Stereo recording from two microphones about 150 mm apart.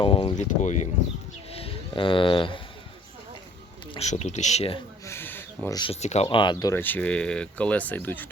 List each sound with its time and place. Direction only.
0.0 s speech: 35° left (ahead or behind)
0.3 s speech: 55° left (ahead or behind)
1.5 s speech: 35° left (ahead or behind)
3.9 s speech: 50° left (ahead or behind)
5.0 s speech: 15° left (ahead or behind)
5.6 s speech: 25° left (ahead or behind)
5.9 s speech: 45° left (ahead or behind)
6.2 s speech: 30° left (ahead or behind)
6.7 s speech: 10° left (ahead or behind)